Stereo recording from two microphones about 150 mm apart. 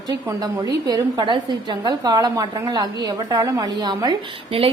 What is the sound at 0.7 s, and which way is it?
A woman's voice, 25° right (ahead or behind).